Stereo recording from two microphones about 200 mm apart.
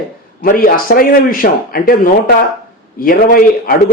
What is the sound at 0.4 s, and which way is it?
A man's voice, 45° left (ahead or behind).